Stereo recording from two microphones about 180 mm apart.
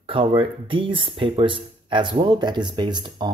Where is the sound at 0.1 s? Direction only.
30° right (ahead or behind).